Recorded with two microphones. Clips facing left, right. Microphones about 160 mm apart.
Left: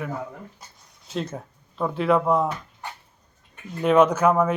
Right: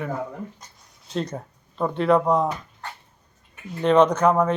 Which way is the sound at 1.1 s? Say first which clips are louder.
Right 2 dB; centre (ahead or behind).